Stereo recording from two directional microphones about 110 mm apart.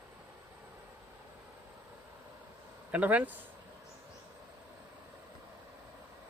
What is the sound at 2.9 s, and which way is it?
Speech, 15° right (ahead or behind).